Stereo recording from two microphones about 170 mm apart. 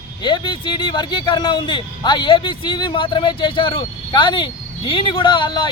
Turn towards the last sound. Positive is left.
turn(degrees=30)  # may be behind; listen again after turning